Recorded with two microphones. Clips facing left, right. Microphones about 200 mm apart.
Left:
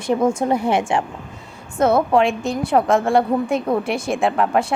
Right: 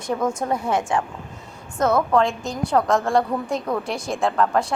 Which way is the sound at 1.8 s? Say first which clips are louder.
Left 3 dB; 30° left (ahead or behind).